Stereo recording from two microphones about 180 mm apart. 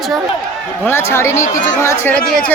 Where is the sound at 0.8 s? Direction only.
15° left (ahead or behind).